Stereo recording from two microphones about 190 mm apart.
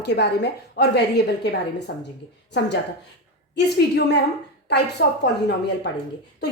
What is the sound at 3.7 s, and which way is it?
A woman's voice, 60° left (ahead or behind).